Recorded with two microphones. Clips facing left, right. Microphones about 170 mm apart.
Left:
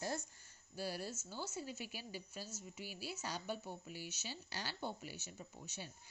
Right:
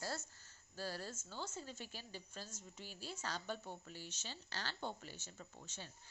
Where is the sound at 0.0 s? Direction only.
20° left (ahead or behind).